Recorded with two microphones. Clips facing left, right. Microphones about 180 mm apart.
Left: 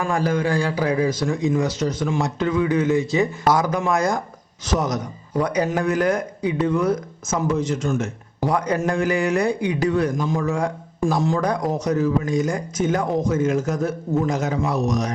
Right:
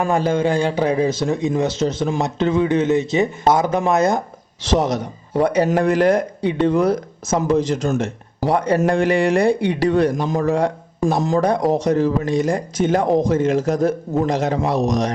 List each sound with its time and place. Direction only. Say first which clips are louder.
0.0 s a man's voice: right 4 dB; 25° right (ahead or behind)
14.8 s speech: right 3 dB; 90° right